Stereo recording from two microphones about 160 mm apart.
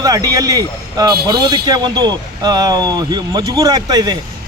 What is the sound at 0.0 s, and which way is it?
Speech, 25° right (ahead or behind).